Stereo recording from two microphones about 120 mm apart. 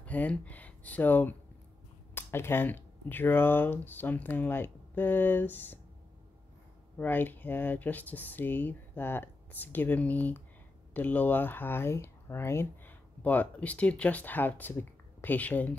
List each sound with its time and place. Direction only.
0.0 s speech: 10° left (ahead or behind)
7.0 s speech: 15° left (ahead or behind)